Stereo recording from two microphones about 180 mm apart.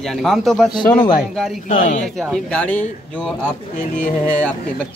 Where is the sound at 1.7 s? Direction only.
40° left (ahead or behind).